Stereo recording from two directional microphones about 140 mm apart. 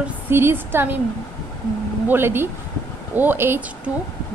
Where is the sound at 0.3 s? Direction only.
15° right (ahead or behind).